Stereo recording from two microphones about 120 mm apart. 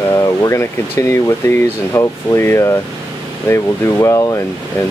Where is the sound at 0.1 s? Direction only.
25° left (ahead or behind).